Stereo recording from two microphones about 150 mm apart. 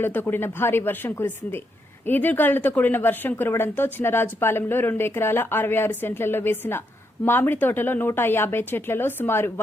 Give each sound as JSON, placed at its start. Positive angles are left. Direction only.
{"t": 0.0, "sound": "a woman's voice", "side_deg": 15}